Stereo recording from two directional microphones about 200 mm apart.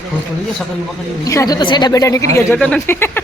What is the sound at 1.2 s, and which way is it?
A woman's voice, 15° left (ahead or behind).